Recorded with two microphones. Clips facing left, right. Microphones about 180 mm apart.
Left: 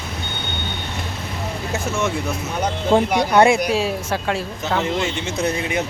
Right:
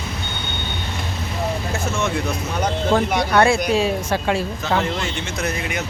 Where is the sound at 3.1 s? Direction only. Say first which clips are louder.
Left 2 dB; 20° left (ahead or behind).